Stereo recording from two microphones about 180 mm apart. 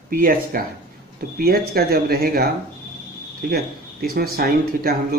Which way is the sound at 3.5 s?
60° right (ahead or behind).